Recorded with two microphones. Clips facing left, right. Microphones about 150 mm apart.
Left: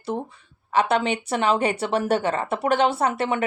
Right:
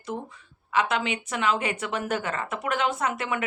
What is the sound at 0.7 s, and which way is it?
Speech, 35° left (ahead or behind).